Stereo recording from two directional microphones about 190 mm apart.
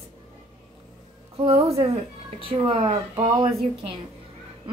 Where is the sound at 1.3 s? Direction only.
30° right (ahead or behind).